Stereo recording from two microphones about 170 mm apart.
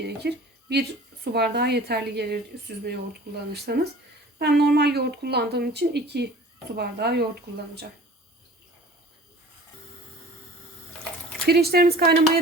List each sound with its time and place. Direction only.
0.0 s a woman's voice: 75° right (ahead or behind)
11.4 s speech: 65° right (ahead or behind)